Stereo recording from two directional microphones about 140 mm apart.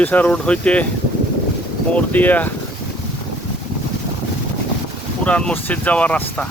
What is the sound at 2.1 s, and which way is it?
Speech, 10° left (ahead or behind).